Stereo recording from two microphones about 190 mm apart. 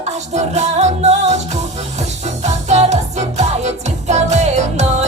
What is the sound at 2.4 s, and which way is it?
Music, 35° right (ahead or behind).